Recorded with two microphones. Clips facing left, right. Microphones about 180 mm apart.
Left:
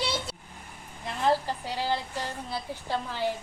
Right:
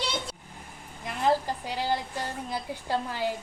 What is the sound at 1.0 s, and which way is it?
A woman's voice, 15° right (ahead or behind).